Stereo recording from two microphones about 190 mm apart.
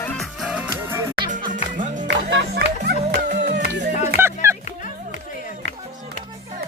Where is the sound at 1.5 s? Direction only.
40° right (ahead or behind).